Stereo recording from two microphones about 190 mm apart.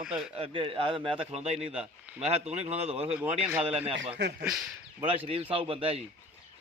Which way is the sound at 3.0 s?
10° right (ahead or behind).